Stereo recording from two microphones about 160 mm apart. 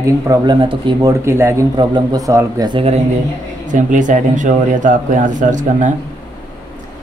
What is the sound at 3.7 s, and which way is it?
Speech, 50° right (ahead or behind).